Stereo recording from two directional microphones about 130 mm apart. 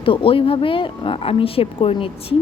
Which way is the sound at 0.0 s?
45° left (ahead or behind).